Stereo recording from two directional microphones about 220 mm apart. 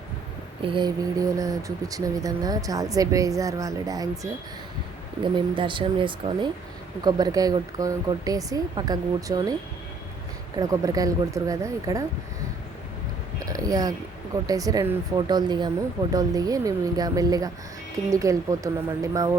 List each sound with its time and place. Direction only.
0.6 s speech: 20° right (ahead or behind)
10.6 s speech: 15° right (ahead or behind)
13.4 s a sound: 15° right (ahead or behind)
14.4 s speech: 15° right (ahead or behind)